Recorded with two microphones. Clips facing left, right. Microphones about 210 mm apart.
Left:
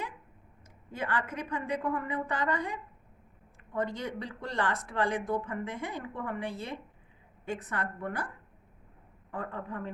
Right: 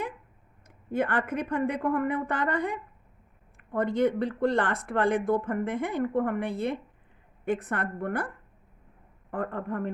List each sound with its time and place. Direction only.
0.9 s speech: 55° right (ahead or behind)
9.3 s speech: 55° right (ahead or behind)